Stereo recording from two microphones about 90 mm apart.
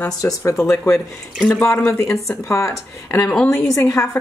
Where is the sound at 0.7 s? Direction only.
30° left (ahead or behind).